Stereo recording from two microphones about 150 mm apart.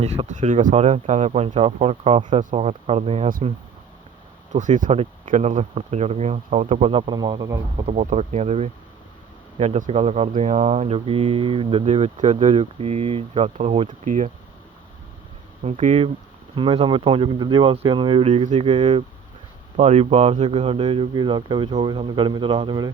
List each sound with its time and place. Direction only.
0.0 s speech: 45° right (ahead or behind)
4.5 s speech: 55° right (ahead or behind); by 7.9 s 25° right (ahead or behind)
7.9 s speech: 45° right (ahead or behind)
12.5 s speech: 40° right (ahead or behind)
15.6 s speech: 50° right (ahead or behind)
16.6 s speech: 35° right (ahead or behind)
19.7 s speech: 50° right (ahead or behind); by 22.9 s 30° right (ahead or behind)